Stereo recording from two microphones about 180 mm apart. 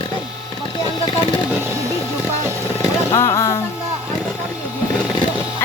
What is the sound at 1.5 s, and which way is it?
Speech, 15° right (ahead or behind).